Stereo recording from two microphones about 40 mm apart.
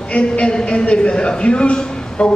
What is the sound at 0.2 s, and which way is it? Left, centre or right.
A man's voice, left.